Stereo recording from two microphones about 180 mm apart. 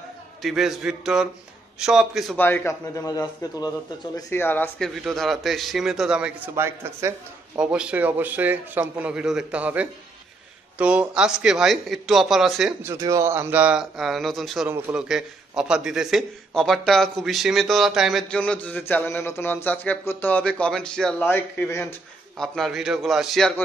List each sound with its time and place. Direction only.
0.4 s speech: centre (ahead or behind)
2.3 s speech: 10° left (ahead or behind)
12.8 s speech: 15° right (ahead or behind); by 21.8 s 15° left (ahead or behind)
22.4 s speech: centre (ahead or behind)